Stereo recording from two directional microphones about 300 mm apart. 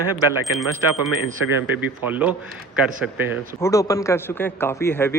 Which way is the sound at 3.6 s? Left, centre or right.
Centre.